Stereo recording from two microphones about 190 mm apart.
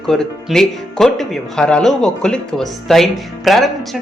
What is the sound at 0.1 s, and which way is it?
Speech, centre (ahead or behind).